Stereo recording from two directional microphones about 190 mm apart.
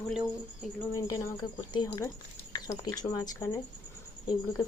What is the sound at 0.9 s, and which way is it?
A woman's voice, 20° left (ahead or behind).